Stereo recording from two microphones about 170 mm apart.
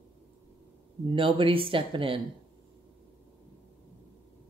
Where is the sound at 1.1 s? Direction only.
30° right (ahead or behind).